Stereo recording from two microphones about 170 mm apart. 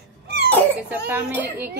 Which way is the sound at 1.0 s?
10° right (ahead or behind).